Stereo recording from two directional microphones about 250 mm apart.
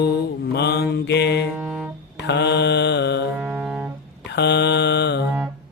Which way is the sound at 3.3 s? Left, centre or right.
Centre.